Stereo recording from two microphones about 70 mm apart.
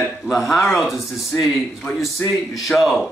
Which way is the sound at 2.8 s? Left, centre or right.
Centre.